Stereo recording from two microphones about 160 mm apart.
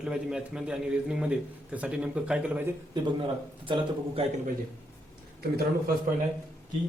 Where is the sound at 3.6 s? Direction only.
30° right (ahead or behind).